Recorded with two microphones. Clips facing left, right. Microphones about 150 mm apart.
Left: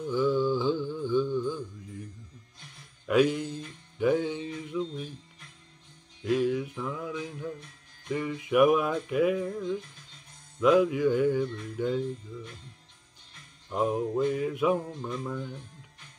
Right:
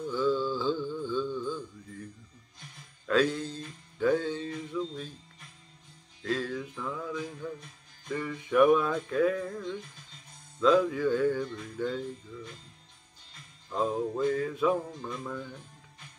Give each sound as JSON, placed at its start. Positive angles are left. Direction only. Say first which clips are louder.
{"t": 0.0, "sound": "music", "louder": "left 2 dB", "side_deg": 15}
{"t": 3.1, "sound": "music", "louder": "left 3 dB", "side_deg": 15}
{"t": 6.2, "sound": "music", "louder": "left 6 dB", "side_deg": 15}
{"t": 13.7, "sound": "music", "louder": "left 2 dB", "side_deg": 15}